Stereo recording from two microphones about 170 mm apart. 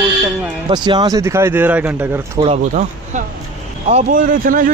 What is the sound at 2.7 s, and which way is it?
Speech, 45° right (ahead or behind).